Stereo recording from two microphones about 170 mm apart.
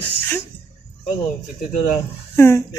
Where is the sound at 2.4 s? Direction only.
15° left (ahead or behind).